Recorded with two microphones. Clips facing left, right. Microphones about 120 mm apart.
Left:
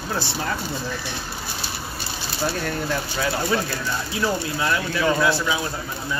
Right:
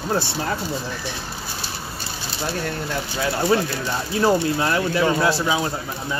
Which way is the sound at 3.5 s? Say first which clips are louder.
Right 3 dB; 35° right (ahead or behind).